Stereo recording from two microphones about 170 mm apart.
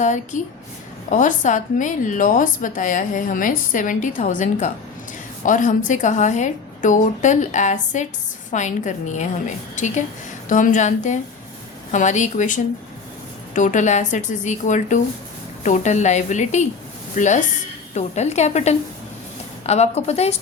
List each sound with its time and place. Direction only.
0.0 s a woman's voice: 45° left (ahead or behind)